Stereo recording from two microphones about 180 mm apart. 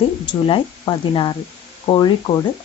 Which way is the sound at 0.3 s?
30° left (ahead or behind).